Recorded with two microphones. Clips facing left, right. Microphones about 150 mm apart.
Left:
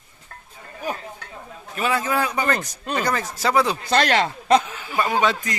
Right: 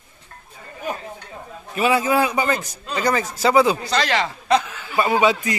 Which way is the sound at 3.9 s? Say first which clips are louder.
Left 2 dB; 50° left (ahead or behind).